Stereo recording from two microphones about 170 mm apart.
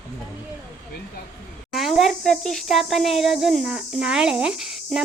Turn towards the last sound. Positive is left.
turn(degrees=0)  # may be behind; listen again after turning